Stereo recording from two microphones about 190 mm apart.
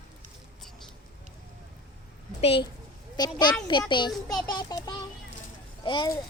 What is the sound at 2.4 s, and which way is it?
A child's voice, 30° left (ahead or behind).